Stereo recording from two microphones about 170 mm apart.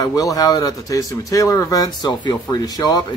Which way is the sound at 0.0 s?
20° left (ahead or behind).